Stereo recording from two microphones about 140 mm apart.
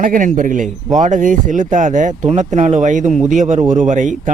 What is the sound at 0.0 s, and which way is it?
A man's voice, 70° right (ahead or behind).